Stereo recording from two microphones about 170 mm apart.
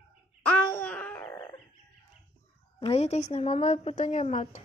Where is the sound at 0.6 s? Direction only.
10° left (ahead or behind).